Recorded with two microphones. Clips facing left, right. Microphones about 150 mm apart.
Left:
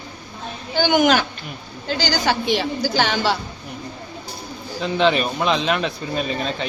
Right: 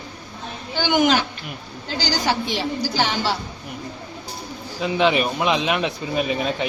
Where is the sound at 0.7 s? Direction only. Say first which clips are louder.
Left 2 dB; 50° left (ahead or behind).